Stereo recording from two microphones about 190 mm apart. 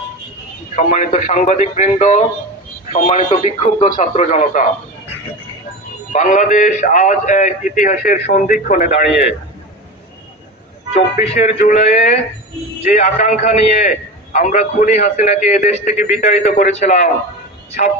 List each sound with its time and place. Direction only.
0.8 s a man's voice: 40° left (ahead or behind)
6.1 s a man's voice: 40° left (ahead or behind)
10.9 s a man's voice: 35° left (ahead or behind)